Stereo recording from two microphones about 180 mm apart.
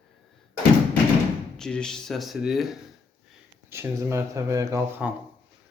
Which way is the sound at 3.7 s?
15° right (ahead or behind).